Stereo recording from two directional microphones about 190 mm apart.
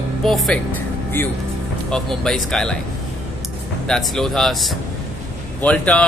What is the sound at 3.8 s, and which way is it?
A man's voice, centre (ahead or behind).